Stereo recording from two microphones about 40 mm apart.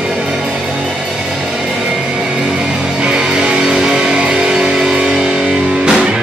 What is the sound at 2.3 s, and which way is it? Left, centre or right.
Music, right.